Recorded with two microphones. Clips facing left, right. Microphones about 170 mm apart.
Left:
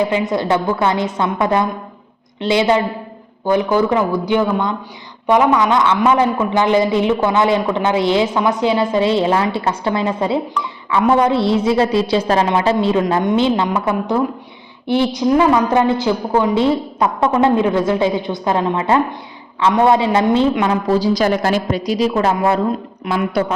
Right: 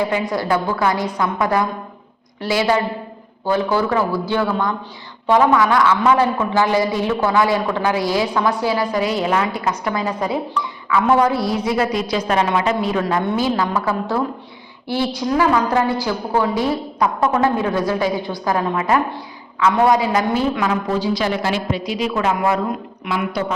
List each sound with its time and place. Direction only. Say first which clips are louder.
0.0 s a woman's voice: left 3 dB; 20° left (ahead or behind)
23.0 s speech: left 4 dB; 50° left (ahead or behind)